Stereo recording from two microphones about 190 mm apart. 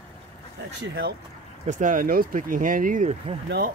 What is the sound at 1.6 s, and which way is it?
Speech, 45° right (ahead or behind).